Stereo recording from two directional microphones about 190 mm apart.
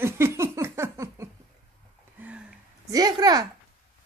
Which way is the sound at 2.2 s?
5° right (ahead or behind).